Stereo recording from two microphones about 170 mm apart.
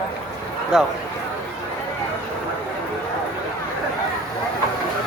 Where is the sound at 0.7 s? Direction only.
Centre (ahead or behind).